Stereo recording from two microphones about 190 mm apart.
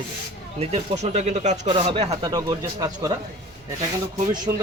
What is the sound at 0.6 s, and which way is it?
Speech, 35° right (ahead or behind).